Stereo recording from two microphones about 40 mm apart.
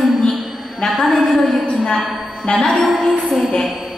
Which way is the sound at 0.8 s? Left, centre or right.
Left.